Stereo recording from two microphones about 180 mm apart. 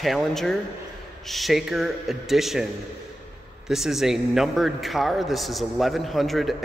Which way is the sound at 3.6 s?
Centre (ahead or behind).